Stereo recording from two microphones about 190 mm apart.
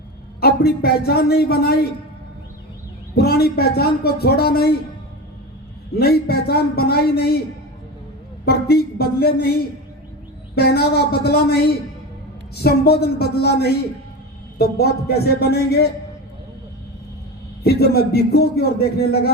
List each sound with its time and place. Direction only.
0.3 s a man's voice: 55° left (ahead or behind)
3.2 s a man's voice: 55° left (ahead or behind)
6.0 s a man's voice: 55° left (ahead or behind)
8.4 s a man's voice: 55° left (ahead or behind)
17.6 s a man's voice: 55° left (ahead or behind)